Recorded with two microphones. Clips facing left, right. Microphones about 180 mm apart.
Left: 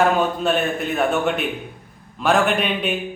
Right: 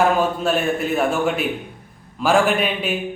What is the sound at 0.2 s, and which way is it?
A man's voice, 5° right (ahead or behind).